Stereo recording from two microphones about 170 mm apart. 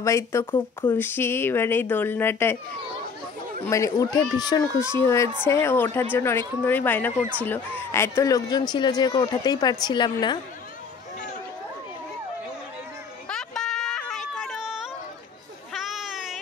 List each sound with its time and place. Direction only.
0.0 s speech: 15° left (ahead or behind)
3.6 s speech: 20° left (ahead or behind)
13.3 s a sound: 5° left (ahead or behind)